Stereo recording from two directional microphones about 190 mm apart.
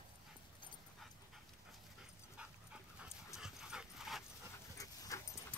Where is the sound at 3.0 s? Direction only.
Centre (ahead or behind).